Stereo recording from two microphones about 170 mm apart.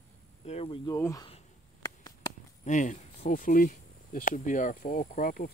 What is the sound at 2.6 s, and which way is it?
Speech, 45° left (ahead or behind).